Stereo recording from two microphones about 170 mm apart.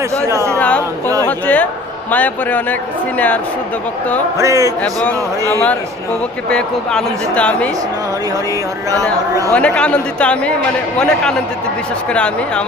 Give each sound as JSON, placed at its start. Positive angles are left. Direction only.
{"t": 0.5, "sound": "a sound", "side_deg": 10}
{"t": 2.0, "sound": "speech", "side_deg": 10}
{"t": 4.4, "sound": "speech", "side_deg": -20}
{"t": 4.8, "sound": "speech", "side_deg": 10}
{"t": 9.5, "sound": "a man's voice", "side_deg": 5}